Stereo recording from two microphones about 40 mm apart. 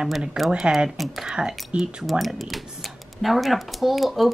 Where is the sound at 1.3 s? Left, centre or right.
Centre.